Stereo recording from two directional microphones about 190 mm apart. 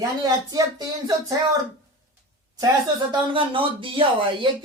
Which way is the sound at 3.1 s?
25° right (ahead or behind).